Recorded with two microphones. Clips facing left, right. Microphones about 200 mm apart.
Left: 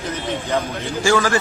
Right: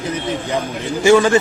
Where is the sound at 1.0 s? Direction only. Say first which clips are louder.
Right 6 dB; 20° right (ahead or behind).